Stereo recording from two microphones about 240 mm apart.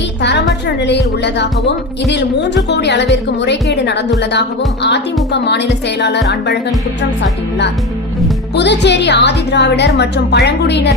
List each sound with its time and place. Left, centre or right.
0.2 s speech: left
8.5 s speech: left